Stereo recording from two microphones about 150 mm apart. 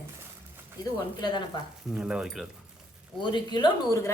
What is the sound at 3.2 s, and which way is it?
Speech, 30° left (ahead or behind).